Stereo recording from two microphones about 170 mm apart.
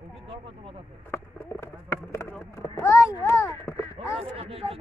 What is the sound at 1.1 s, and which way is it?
Speech, 15° left (ahead or behind).